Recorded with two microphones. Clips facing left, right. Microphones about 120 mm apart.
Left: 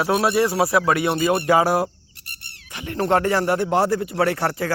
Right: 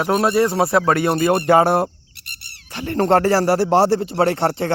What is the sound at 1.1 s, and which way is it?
Music, 45° right (ahead or behind).